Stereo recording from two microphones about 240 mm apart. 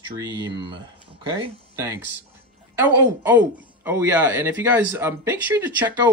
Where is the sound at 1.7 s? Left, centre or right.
Centre.